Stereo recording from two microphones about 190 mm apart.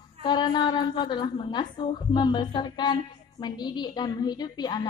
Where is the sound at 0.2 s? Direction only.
20° left (ahead or behind).